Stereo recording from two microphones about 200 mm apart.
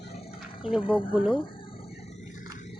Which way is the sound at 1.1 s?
5° right (ahead or behind).